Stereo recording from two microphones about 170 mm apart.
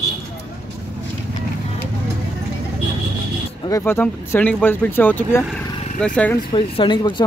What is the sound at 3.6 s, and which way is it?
Speech, 15° left (ahead or behind).